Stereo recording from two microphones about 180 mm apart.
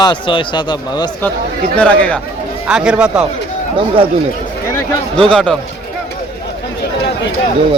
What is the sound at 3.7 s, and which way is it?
Speech, 30° right (ahead or behind).